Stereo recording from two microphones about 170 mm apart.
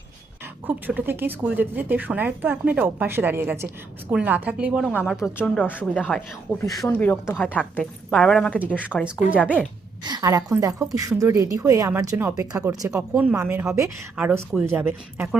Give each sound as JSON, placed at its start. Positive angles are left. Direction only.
{"t": 0.7, "sound": "a woman's voice", "side_deg": -10}
{"t": 5.2, "sound": "a woman's voice", "side_deg": 10}
{"t": 8.5, "sound": "a woman's voice", "side_deg": -10}
{"t": 9.4, "sound": "speech", "side_deg": 10}
{"t": 10.0, "sound": "a woman's voice", "side_deg": -25}